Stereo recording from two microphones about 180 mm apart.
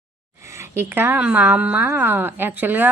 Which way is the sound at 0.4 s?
15° right (ahead or behind).